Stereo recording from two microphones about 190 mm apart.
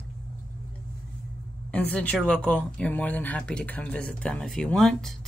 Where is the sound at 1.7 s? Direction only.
5° left (ahead or behind).